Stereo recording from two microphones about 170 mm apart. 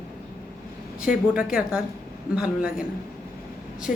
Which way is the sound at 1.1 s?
5° right (ahead or behind).